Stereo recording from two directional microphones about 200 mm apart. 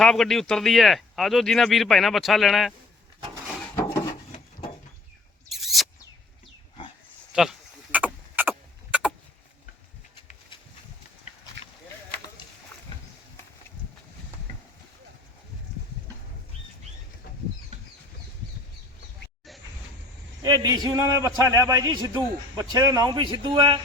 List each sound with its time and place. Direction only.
0.0 s speech: centre (ahead or behind)
5.5 s a sound: centre (ahead or behind)
7.9 s vehicle: 10° right (ahead or behind)
11.6 s a sound: 65° right (ahead or behind)
17.7 s bird flight: 35° right (ahead or behind)
20.4 s a man's voice: 20° right (ahead or behind)